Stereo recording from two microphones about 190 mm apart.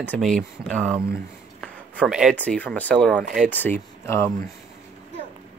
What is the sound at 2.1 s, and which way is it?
Speech, 5° right (ahead or behind).